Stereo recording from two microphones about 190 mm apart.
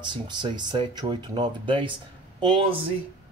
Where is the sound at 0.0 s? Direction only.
25° right (ahead or behind).